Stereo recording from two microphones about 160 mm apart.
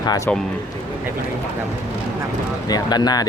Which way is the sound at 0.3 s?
10° left (ahead or behind).